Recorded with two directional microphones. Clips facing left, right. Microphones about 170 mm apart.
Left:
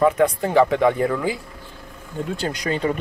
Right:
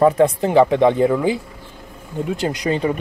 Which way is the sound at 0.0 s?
25° right (ahead or behind).